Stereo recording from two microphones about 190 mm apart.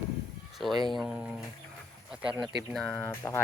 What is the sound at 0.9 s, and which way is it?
Speech, centre (ahead or behind).